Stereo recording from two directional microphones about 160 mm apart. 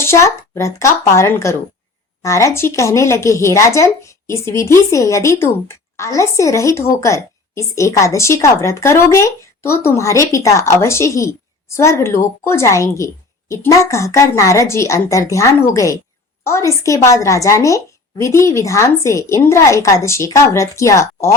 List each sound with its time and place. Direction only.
0.0 s a woman's voice: 15° left (ahead or behind)